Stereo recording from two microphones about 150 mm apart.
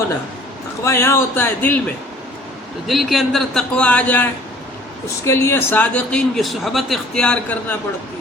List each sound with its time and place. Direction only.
0.9 s a man's voice: 20° left (ahead or behind)
2.8 s a man's voice: centre (ahead or behind)